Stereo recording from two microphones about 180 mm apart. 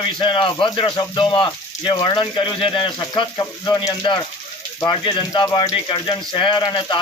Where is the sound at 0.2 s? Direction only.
25° left (ahead or behind).